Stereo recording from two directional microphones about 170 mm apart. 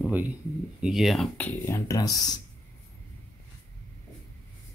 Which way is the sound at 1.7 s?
20° left (ahead or behind).